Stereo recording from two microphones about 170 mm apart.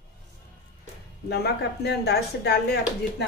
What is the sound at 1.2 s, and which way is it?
Speech, 75° left (ahead or behind).